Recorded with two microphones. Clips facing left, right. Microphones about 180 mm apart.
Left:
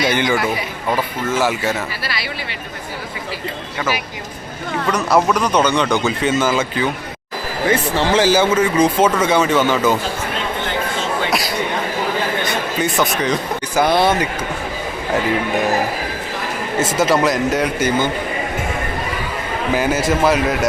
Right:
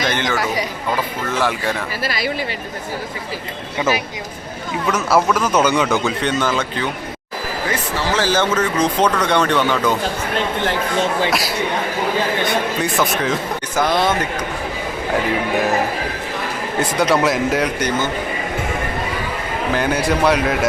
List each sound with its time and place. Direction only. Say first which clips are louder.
0.0 s speech: left 3 dB; 10° left (ahead or behind)
1.3 s speech: left 2 dB; 5° left (ahead or behind)
2.0 s speech: right 5 dB; 45° right (ahead or behind)
4.9 s speech: left 1 dB; 5° right (ahead or behind)
7.9 s speech: left 3 dB; 20° left (ahead or behind)
8.3 s speech: left 3 dB; 10° left (ahead or behind)
11.3 s a man's voice: even; centre (ahead or behind)
13.7 s speech: left 3 dB; 10° left (ahead or behind)
15.5 s speech: even; centre (ahead or behind)
19.7 s speech: left 1 dB; 5° left (ahead or behind)